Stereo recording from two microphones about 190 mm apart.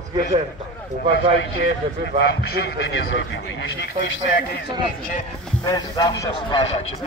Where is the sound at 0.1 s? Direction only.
40° right (ahead or behind).